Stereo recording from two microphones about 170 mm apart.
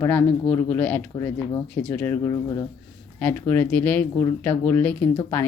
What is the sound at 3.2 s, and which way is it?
Speech, 10° left (ahead or behind).